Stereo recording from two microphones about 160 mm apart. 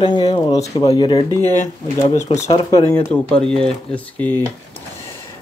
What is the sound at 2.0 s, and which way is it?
Speech, 40° left (ahead or behind).